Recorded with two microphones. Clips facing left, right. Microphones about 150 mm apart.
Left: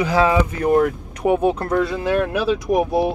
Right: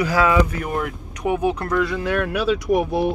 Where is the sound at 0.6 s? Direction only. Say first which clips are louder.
Left 9 dB; 40° left (ahead or behind); by 2.8 s 20° left (ahead or behind).